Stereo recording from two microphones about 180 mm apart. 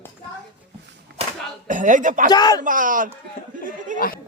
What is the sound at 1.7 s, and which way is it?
Speech, 45° right (ahead or behind).